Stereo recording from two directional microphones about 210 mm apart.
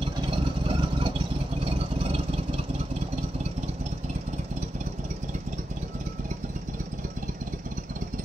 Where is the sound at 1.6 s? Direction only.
25° right (ahead or behind).